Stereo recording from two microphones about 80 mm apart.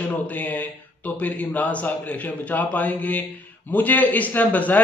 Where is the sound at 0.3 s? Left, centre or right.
Left.